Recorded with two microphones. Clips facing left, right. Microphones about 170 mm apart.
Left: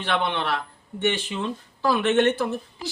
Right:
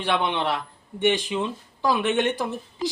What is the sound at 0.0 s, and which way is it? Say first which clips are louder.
Speech: right 1 dB; 15° right (ahead or behind).